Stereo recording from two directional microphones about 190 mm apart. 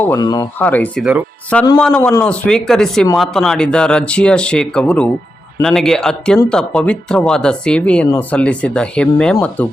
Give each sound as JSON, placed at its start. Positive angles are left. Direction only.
{"t": 0.0, "sound": "speech", "side_deg": 15}
{"t": 0.6, "sound": "speech", "side_deg": 10}